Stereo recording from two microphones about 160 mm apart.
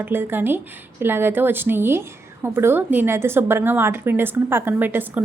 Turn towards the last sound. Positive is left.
turn(degrees=-10)  # may be behind; listen again after turning